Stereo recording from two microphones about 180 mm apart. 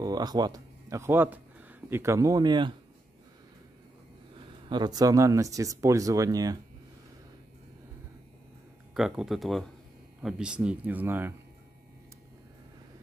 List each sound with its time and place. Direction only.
0.0 s speech: 20° right (ahead or behind)
4.4 s speech: 25° right (ahead or behind)
8.9 s speech: centre (ahead or behind)